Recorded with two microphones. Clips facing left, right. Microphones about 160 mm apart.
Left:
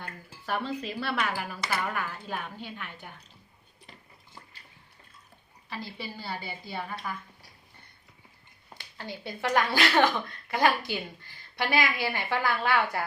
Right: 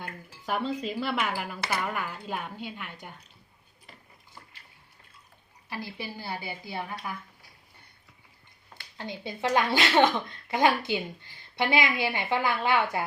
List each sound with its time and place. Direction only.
0.0 s a woman's voice: 15° right (ahead or behind)
5.6 s a woman's voice: 10° right (ahead or behind)
9.0 s speech: 20° right (ahead or behind)